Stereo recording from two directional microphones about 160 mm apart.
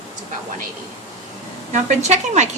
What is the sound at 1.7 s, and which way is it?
Speech, 45° right (ahead or behind).